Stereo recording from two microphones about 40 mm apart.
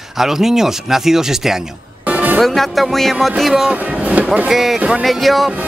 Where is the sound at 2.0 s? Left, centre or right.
Right.